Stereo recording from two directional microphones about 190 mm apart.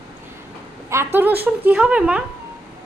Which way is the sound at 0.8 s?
10° right (ahead or behind).